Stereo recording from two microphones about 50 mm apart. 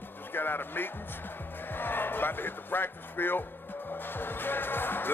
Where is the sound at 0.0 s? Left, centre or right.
Left.